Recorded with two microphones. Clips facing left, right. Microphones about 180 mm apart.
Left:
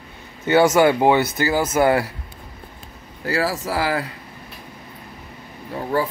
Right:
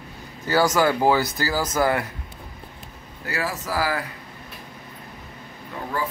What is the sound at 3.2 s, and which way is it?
Speech, 35° left (ahead or behind).